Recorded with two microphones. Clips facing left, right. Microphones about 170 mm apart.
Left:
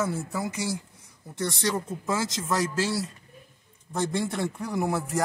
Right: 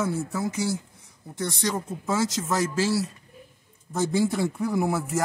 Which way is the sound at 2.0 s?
Centre (ahead or behind).